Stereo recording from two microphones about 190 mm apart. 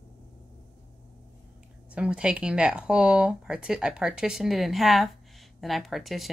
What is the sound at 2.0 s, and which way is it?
Speech, 5° right (ahead or behind).